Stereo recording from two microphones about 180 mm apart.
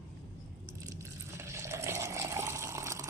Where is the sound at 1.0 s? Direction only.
15° right (ahead or behind).